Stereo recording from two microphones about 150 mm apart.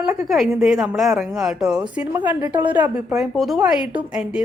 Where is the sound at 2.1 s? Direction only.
15° right (ahead or behind).